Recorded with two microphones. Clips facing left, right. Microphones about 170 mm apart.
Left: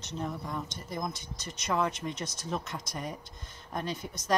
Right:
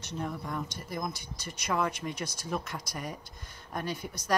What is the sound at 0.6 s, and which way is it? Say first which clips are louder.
Speech: right 1 dB; 20° left (ahead or behind).